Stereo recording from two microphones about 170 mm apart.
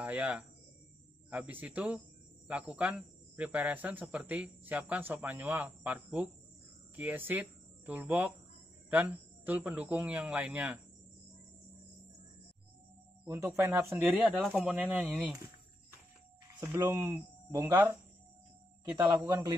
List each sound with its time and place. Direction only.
0.0 s speech: 10° right (ahead or behind)
13.3 s speech: 15° right (ahead or behind)
14.1 s speech: centre (ahead or behind)
16.5 s speech: 20° right (ahead or behind)